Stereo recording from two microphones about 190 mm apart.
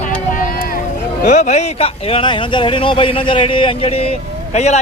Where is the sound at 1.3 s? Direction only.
40° left (ahead or behind).